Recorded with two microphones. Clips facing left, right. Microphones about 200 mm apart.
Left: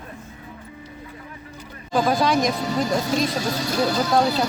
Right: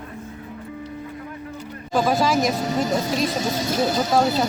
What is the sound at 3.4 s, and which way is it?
Speech, 20° right (ahead or behind).